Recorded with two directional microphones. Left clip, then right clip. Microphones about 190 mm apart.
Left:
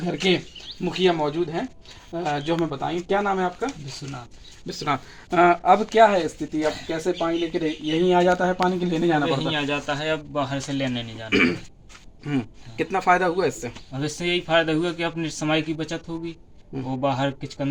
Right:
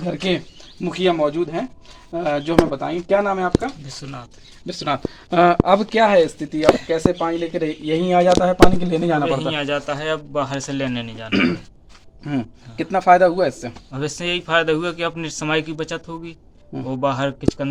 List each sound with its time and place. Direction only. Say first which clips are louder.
0.0 s a man's voice: even; 10° right (ahead or behind)
4.6 s a man's voice: right 3 dB; 30° right (ahead or behind)
5.3 s speech: right 2 dB; 50° right (ahead or behind)
6.6 s speech: right 10 dB; 25° right (ahead or behind)
9.5 s a man's voice: right 3 dB; 5° left (ahead or behind)
11.3 s a man's voice: even; 40° right (ahead or behind)
13.9 s a man's voice: right 2 dB; 10° right (ahead or behind)